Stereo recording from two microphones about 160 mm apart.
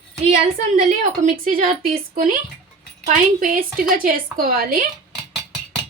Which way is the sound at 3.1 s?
55° right (ahead or behind).